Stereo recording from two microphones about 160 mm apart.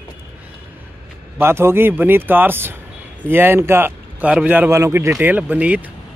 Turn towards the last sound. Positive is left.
turn(degrees=-10)  # may be behind; listen again after turning